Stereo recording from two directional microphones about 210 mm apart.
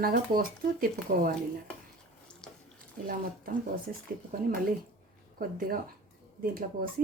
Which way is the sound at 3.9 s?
45° right (ahead or behind).